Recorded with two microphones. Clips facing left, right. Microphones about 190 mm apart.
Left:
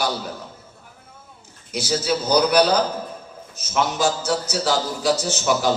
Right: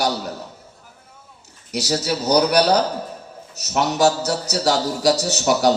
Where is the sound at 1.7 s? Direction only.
40° right (ahead or behind).